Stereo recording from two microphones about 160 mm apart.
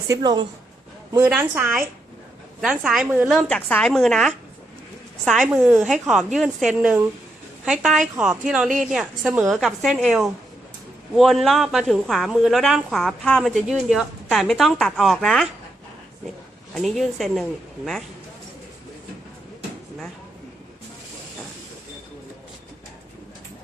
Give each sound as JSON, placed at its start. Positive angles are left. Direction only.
{"t": 0.1, "sound": "a woman's voice", "side_deg": -25}
{"t": 1.2, "sound": "a woman's voice", "side_deg": -10}
{"t": 3.5, "sound": "a woman's voice", "side_deg": 5}
{"t": 16.7, "sound": "speech", "side_deg": 0}